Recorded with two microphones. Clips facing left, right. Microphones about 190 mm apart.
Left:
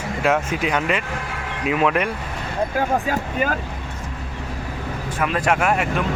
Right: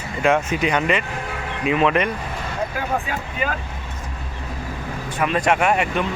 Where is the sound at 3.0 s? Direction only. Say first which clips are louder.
Left 4 dB; 45° left (ahead or behind).